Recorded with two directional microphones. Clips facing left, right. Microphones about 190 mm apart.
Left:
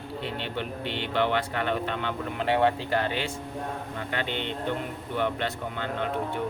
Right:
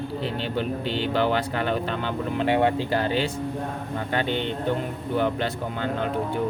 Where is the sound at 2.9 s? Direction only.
30° right (ahead or behind).